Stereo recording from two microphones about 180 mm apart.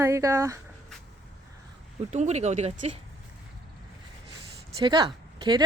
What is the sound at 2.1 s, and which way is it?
Speech, 40° right (ahead or behind).